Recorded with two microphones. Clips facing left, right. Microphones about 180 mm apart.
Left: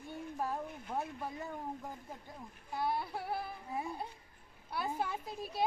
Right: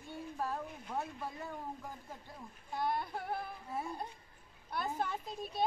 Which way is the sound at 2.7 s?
5° left (ahead or behind).